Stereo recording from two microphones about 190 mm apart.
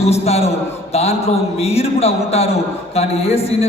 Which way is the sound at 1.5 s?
35° left (ahead or behind).